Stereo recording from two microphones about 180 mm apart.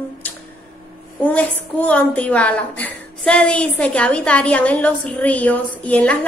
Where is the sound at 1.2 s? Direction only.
10° left (ahead or behind).